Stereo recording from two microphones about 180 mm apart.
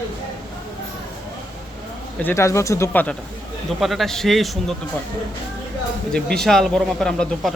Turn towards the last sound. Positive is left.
turn(degrees=0)  # may be behind; listen again after turning